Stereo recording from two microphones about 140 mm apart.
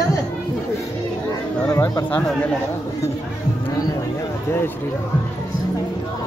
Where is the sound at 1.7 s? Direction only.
25° left (ahead or behind).